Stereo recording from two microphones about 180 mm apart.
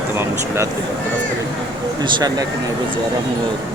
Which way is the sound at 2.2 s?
20° right (ahead or behind).